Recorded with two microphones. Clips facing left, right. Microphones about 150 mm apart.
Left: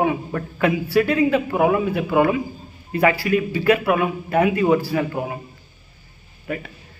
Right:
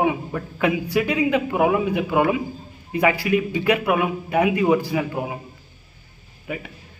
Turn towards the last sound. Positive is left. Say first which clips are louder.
# left 2 dB
turn(degrees=-15)  # may be behind; listen again after turning